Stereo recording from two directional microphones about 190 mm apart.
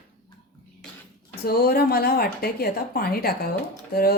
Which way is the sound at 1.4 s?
55° left (ahead or behind).